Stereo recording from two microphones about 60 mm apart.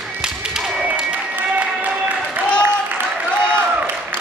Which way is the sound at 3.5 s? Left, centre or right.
Right.